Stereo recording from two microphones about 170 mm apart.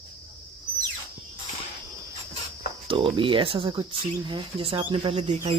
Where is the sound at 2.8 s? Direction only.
30° right (ahead or behind).